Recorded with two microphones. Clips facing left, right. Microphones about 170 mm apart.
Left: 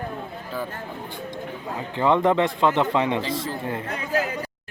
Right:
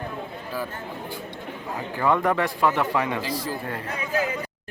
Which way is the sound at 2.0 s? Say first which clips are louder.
Left 3 dB; 20° left (ahead or behind).